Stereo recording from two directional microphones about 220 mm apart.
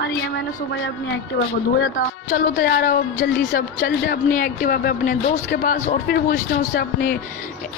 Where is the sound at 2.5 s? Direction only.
50° left (ahead or behind).